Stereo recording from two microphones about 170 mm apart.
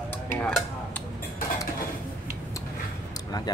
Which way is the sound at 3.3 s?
25° left (ahead or behind).